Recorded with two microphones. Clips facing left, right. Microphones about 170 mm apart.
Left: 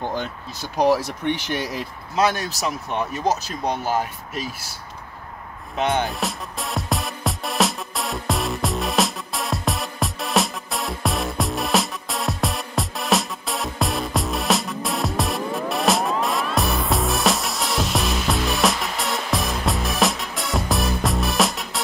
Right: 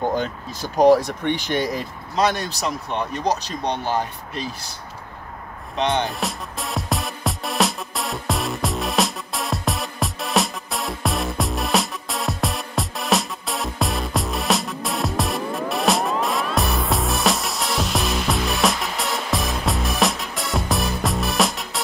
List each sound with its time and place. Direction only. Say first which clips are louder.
0.6 s speech: right 4 dB; 45° right (ahead or behind)
1.7 s speech: right 3 dB; 5° left (ahead or behind)
5.8 s music: even; 5° left (ahead or behind)